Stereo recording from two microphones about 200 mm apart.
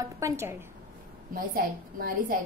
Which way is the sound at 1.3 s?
45° right (ahead or behind).